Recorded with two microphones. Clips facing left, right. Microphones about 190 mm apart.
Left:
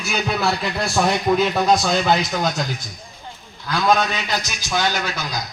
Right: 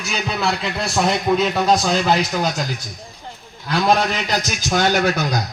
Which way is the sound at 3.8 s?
35° right (ahead or behind).